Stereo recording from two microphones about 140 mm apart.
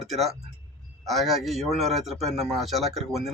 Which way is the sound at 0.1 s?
Centre (ahead or behind).